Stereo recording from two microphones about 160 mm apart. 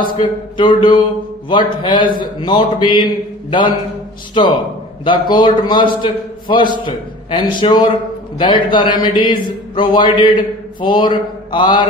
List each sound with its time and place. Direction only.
0.2 s a man's voice: 30° left (ahead or behind)
5.0 s a man's voice: 30° left (ahead or behind)